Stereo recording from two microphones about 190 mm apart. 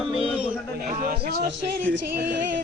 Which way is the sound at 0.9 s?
50° right (ahead or behind).